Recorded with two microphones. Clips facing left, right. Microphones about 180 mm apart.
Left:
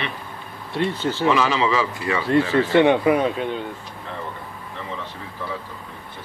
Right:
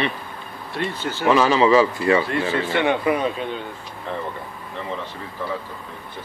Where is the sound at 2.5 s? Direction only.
35° left (ahead or behind).